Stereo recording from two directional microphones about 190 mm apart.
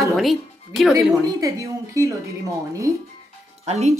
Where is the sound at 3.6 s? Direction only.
35° right (ahead or behind).